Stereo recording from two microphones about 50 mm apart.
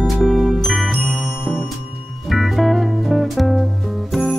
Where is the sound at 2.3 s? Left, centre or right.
Centre.